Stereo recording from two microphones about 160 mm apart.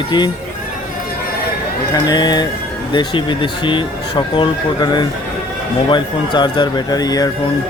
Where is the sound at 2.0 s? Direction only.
25° left (ahead or behind).